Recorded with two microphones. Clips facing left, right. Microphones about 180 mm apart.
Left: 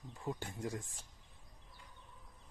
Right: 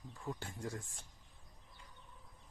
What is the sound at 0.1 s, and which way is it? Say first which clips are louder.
Speech: left 3 dB; 15° left (ahead or behind).